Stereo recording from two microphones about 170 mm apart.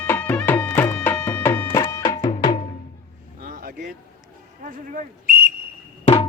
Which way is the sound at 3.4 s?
55° right (ahead or behind).